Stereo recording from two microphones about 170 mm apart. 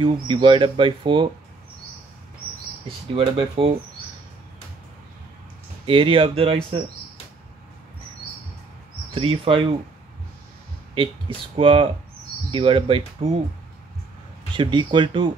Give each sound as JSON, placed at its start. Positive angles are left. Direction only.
{"t": 0.0, "sound": "speech", "side_deg": -30}
{"t": 2.9, "sound": "speech", "side_deg": -35}
{"t": 5.9, "sound": "speech", "side_deg": -30}
{"t": 9.1, "sound": "speech", "side_deg": -35}
{"t": 11.0, "sound": "speech", "side_deg": -30}
{"t": 14.5, "sound": "speech", "side_deg": -30}